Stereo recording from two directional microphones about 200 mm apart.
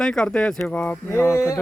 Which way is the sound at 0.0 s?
5° left (ahead or behind).